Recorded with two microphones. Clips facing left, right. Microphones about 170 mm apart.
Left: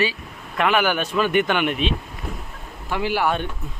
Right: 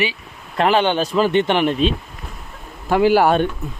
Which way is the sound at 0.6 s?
30° right (ahead or behind).